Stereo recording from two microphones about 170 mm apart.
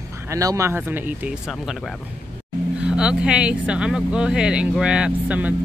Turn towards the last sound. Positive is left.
turn(degrees=-5)  # may be behind; listen again after turning